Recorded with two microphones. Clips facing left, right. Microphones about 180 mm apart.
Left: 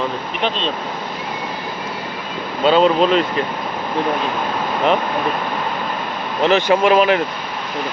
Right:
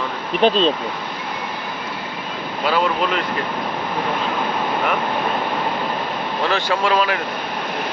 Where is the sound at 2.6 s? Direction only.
25° left (ahead or behind).